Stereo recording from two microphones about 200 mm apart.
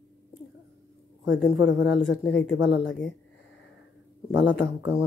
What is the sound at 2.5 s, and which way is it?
Speech, 65° left (ahead or behind).